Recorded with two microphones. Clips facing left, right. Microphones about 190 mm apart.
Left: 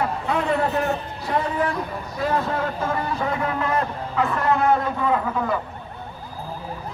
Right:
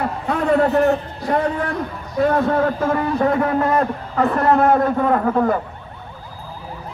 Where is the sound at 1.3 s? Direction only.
45° right (ahead or behind).